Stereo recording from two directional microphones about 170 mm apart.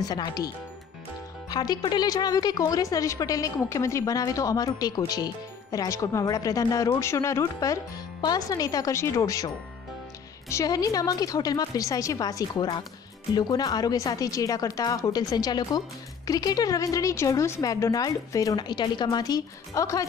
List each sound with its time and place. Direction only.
0.1 s speech: 20° left (ahead or behind)
1.5 s speech: 25° left (ahead or behind)
10.5 s speech: 20° left (ahead or behind)